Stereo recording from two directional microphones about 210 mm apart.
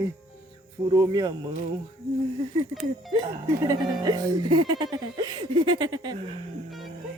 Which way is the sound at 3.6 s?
15° right (ahead or behind).